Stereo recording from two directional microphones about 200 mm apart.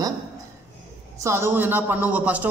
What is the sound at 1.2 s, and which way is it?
A man's voice, 10° right (ahead or behind).